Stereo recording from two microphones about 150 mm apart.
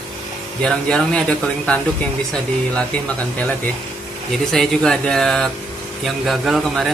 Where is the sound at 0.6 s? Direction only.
5° left (ahead or behind).